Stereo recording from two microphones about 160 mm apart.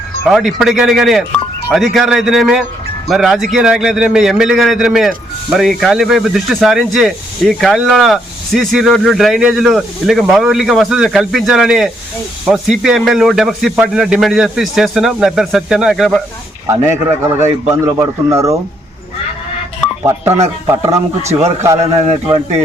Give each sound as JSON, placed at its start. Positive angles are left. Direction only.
{"t": 0.3, "sound": "speech", "side_deg": 0}
{"t": 16.6, "sound": "a man's voice", "side_deg": -15}
{"t": 20.1, "sound": "a man's voice", "side_deg": -15}